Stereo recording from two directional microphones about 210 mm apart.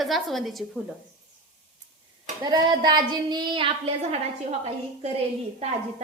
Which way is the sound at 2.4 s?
20° right (ahead or behind).